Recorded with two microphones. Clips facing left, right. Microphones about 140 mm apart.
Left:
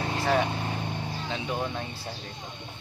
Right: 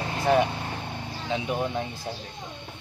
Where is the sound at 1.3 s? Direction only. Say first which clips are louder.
Right 6 dB; 15° right (ahead or behind).